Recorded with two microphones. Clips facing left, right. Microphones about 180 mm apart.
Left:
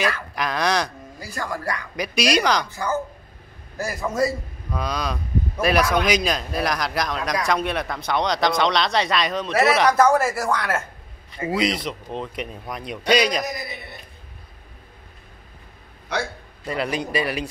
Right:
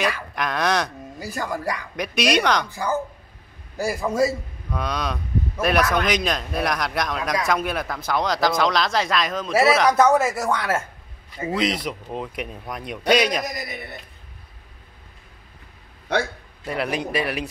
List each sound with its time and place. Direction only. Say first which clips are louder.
0.4 s a man's voice: even; centre (ahead or behind)
1.2 s speech: right 2 dB; 20° right (ahead or behind)
2.0 s a man's voice: even; centre (ahead or behind)
2.7 s speech: right 1 dB; 15° right (ahead or behind)
4.6 s a man's voice: even; centre (ahead or behind)
16.6 s a man's voice: even; centre (ahead or behind)